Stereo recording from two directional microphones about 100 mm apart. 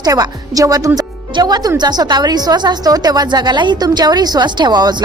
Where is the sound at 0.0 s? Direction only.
40° right (ahead or behind).